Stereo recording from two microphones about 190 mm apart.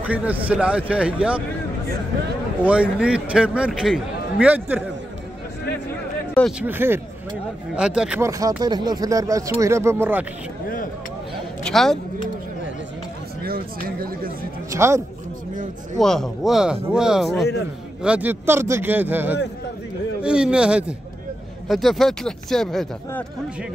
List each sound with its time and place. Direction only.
0.0 s speech: 10° right (ahead or behind)
2.6 s a man's voice: 5° right (ahead or behind)
6.6 s a man's voice: 10° right (ahead or behind)
8.3 s speech: 20° right (ahead or behind)
11.6 s a man's voice: centre (ahead or behind)
13.4 s speech: 50° right (ahead or behind)
14.7 s speech: 15° right (ahead or behind)
15.5 s speech: 45° right (ahead or behind)
16.0 s a man's voice: centre (ahead or behind)